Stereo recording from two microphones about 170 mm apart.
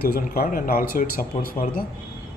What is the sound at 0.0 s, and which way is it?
Speech, 60° left (ahead or behind).